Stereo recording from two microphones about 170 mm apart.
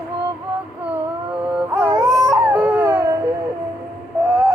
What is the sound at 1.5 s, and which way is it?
Music, 10° right (ahead or behind).